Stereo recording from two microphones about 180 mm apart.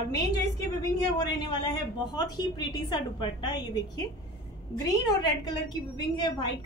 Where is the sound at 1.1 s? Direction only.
25° left (ahead or behind).